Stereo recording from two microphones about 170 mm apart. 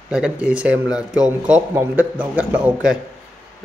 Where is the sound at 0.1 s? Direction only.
5° right (ahead or behind).